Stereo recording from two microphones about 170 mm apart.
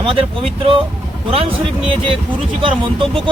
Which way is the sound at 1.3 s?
35° right (ahead or behind).